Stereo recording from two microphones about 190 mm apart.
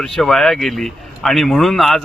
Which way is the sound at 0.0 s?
Centre (ahead or behind).